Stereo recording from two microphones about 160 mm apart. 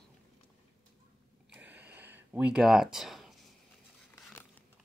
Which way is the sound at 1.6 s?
10° right (ahead or behind).